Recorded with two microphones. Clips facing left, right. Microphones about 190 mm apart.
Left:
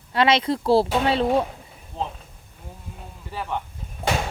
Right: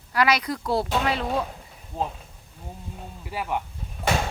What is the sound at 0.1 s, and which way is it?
Speech, 25° left (ahead or behind).